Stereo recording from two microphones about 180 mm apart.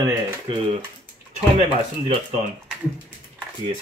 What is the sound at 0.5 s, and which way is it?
Speech, 25° right (ahead or behind).